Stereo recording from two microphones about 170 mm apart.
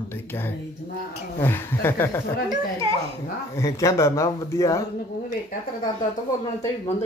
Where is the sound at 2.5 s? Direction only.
30° right (ahead or behind).